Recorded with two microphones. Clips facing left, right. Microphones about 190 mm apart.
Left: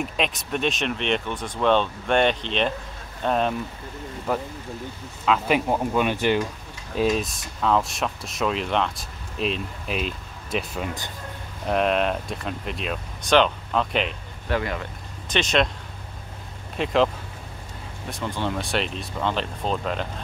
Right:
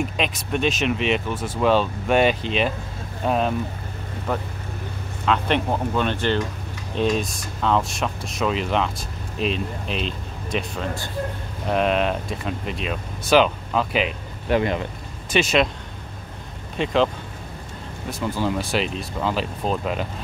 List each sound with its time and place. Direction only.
0.0 s speech: centre (ahead or behind)
14.5 s speech: 20° right (ahead or behind)
15.2 s speech: 5° right (ahead or behind)
16.7 s speech: centre (ahead or behind)
18.1 s speech: 5° right (ahead or behind)